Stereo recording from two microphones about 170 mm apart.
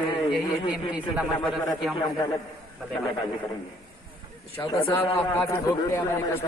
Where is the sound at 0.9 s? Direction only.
5° right (ahead or behind).